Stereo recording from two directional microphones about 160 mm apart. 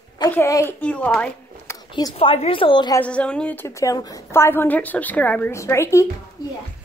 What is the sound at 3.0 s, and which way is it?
A woman's voice, 5° left (ahead or behind).